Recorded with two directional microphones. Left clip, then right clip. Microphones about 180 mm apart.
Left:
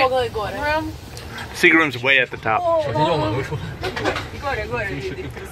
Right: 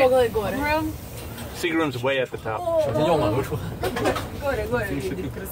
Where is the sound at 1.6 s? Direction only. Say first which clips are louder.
Left 9 dB; 25° left (ahead or behind).